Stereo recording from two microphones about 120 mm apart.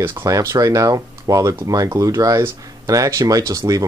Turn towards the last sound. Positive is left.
turn(degrees=-30)  # may be behind; listen again after turning